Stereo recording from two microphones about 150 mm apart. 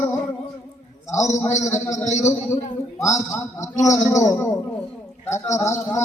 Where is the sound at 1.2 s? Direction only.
20° left (ahead or behind).